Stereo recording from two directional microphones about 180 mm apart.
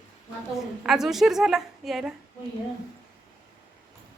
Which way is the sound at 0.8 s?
Centre (ahead or behind).